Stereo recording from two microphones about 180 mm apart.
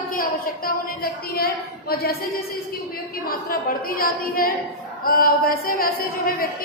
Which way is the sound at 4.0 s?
55° left (ahead or behind).